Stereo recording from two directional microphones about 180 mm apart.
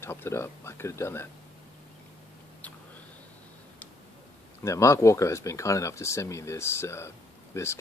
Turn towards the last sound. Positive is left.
turn(degrees=15)  # may be behind; listen again after turning